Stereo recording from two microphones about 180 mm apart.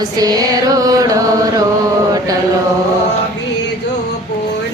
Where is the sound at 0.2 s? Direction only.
20° right (ahead or behind).